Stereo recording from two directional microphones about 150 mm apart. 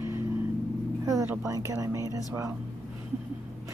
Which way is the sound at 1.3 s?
20° right (ahead or behind).